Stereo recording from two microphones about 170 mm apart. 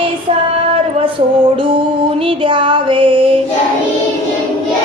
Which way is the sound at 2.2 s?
30° right (ahead or behind).